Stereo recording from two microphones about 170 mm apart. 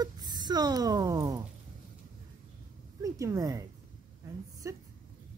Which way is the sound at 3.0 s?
20° right (ahead or behind).